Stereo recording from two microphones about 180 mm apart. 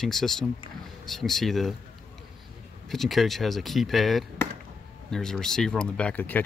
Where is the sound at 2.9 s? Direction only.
Centre (ahead or behind).